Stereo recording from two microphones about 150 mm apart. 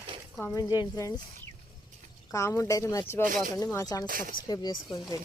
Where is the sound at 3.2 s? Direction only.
65° right (ahead or behind).